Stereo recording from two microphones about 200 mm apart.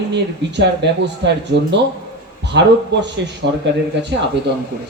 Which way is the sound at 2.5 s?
60° right (ahead or behind).